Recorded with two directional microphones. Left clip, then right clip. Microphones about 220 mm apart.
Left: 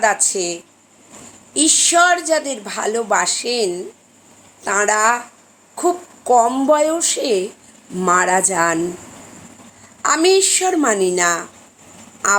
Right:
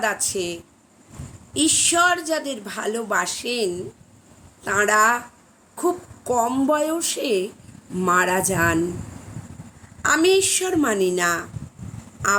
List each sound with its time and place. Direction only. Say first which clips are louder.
0.0 s a woman's voice: left 7 dB; 15° right (ahead or behind)
10.0 s a woman's voice: left 3 dB; 15° right (ahead or behind)